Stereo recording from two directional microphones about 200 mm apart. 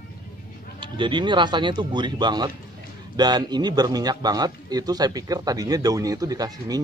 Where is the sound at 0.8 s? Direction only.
25° right (ahead or behind).